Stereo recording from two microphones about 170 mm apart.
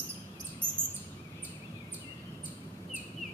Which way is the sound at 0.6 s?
25° left (ahead or behind).